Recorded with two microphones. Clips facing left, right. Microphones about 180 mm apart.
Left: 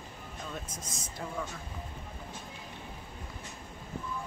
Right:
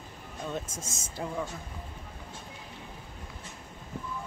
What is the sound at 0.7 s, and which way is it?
Speech, 25° right (ahead or behind).